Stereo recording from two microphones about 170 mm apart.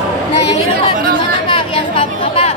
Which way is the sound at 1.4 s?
30° left (ahead or behind).